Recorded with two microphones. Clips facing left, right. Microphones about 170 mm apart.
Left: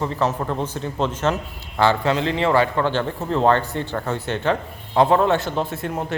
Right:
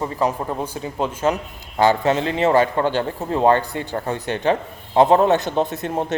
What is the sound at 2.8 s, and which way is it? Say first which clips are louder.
A man's voice: right 1 dB; 15° right (ahead or behind).